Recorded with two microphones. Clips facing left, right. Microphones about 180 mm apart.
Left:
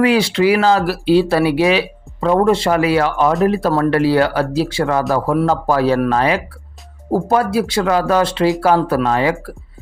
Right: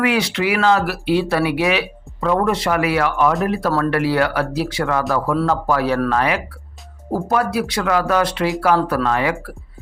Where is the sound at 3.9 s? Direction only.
30° left (ahead or behind).